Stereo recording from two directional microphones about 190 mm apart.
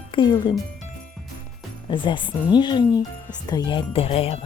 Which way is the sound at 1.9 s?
25° left (ahead or behind).